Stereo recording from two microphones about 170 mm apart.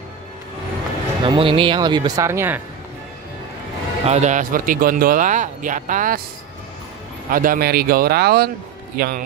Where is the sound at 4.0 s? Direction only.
40° right (ahead or behind).